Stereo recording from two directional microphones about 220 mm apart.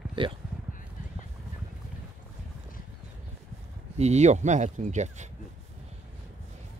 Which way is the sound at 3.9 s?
30° right (ahead or behind).